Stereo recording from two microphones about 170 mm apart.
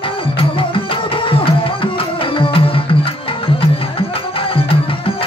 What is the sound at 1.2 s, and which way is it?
Tabla, 30° left (ahead or behind).